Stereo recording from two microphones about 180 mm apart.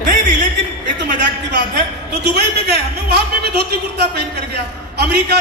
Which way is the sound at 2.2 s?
65° right (ahead or behind).